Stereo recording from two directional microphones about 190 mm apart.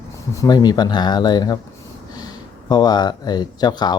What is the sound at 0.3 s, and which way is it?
Speech, 20° left (ahead or behind).